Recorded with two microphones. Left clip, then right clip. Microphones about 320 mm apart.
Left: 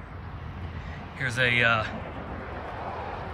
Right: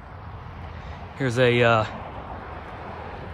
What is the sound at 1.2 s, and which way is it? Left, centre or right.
Speech, centre.